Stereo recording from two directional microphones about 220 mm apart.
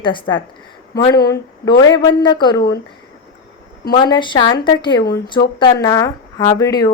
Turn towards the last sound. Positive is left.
turn(degrees=15)  # may be behind; listen again after turning